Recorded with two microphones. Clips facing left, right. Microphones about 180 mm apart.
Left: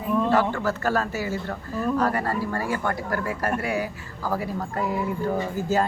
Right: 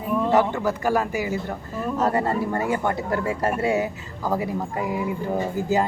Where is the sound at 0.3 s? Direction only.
20° right (ahead or behind).